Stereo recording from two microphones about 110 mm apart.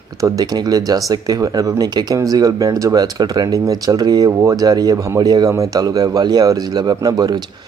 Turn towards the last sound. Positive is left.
turn(degrees=-35)  # may be behind; listen again after turning